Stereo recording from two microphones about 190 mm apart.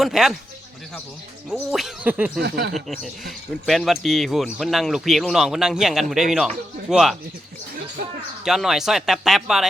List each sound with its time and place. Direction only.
0.0 s speech: centre (ahead or behind)
1.5 s speech: centre (ahead or behind)
2.4 s a sound: 60° right (ahead or behind)
2.7 s speech: centre (ahead or behind)
8.4 s speech: centre (ahead or behind)